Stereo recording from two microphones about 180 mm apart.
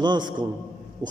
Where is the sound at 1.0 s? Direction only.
20° right (ahead or behind).